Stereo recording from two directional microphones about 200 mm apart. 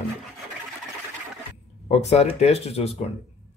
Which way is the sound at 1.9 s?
35° left (ahead or behind).